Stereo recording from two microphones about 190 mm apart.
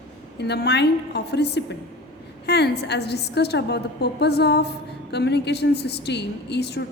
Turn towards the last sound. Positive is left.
turn(degrees=60)  # may be behind; listen again after turning